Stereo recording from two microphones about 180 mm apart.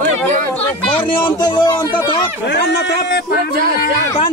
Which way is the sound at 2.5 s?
70° left (ahead or behind).